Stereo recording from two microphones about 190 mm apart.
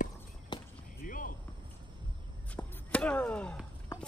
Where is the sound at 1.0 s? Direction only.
45° left (ahead or behind).